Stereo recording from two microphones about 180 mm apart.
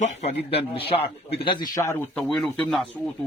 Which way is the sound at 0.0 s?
35° left (ahead or behind).